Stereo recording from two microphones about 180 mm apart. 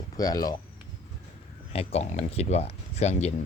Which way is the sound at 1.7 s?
35° left (ahead or behind).